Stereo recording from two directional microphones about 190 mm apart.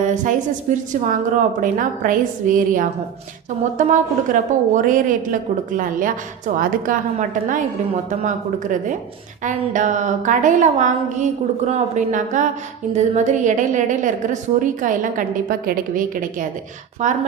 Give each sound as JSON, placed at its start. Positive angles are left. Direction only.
{"t": 0.0, "sound": "a woman's voice", "side_deg": -40}
{"t": 9.4, "sound": "a woman's voice", "side_deg": -40}